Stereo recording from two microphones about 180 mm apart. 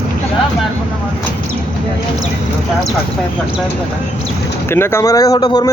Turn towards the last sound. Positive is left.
turn(degrees=25)  # may be behind; listen again after turning